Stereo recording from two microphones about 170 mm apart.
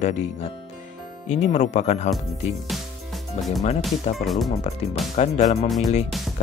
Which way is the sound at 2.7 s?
Centre (ahead or behind).